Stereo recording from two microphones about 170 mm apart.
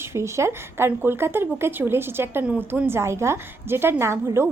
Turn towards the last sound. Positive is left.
turn(degrees=-15)  # may be behind; listen again after turning